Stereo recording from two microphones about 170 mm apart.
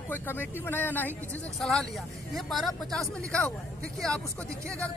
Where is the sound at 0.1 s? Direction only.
10° left (ahead or behind).